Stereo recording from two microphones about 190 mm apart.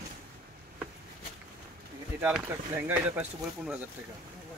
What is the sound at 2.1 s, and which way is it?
Speech, 10° right (ahead or behind).